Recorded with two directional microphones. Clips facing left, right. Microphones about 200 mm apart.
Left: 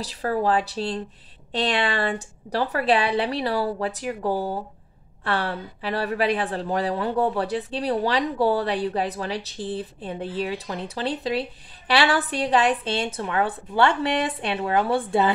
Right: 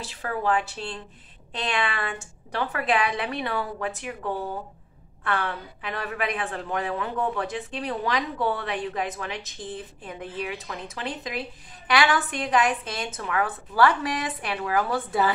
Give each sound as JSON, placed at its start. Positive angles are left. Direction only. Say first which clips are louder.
{"t": 0.0, "sound": "a woman's voice", "louder": "left 5 dB", "side_deg": 35}